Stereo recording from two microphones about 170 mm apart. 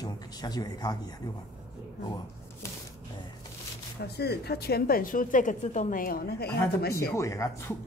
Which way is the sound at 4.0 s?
70° left (ahead or behind).